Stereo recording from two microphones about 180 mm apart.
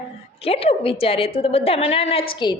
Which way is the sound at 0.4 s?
30° left (ahead or behind).